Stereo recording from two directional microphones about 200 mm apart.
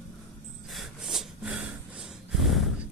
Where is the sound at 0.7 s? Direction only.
Centre (ahead or behind).